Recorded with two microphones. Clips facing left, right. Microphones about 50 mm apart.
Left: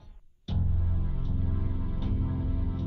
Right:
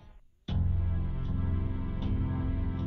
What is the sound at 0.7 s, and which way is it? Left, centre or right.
Music, centre.